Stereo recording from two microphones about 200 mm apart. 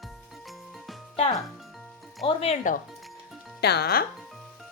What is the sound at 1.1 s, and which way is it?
Speech, 30° left (ahead or behind).